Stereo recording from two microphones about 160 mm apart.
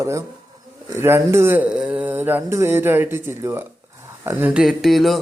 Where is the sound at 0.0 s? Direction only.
20° right (ahead or behind).